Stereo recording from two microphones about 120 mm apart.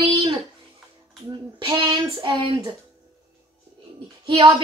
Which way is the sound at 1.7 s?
40° right (ahead or behind).